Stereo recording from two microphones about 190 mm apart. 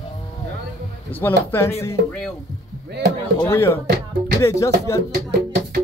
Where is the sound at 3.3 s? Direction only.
15° left (ahead or behind).